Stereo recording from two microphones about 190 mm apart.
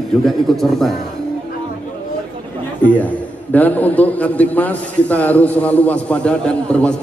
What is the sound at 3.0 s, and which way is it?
A man's voice, 10° left (ahead or behind).